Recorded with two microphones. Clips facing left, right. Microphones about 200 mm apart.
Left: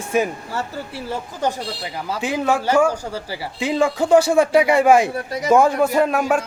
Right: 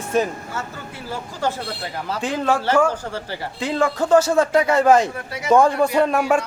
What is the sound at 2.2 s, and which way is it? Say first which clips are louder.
Speech: left 1 dB; 10° left (ahead or behind).